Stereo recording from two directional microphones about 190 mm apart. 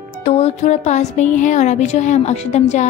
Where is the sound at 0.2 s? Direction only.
35° left (ahead or behind).